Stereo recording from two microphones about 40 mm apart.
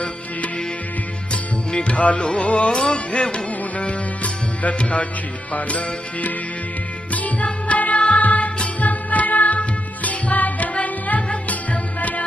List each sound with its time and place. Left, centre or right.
1.3 s music: left
7.1 s music: left